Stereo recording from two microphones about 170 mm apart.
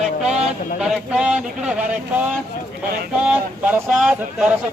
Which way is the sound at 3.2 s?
5° right (ahead or behind).